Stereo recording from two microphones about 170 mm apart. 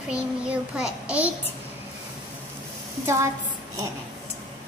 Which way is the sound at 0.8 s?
5° right (ahead or behind).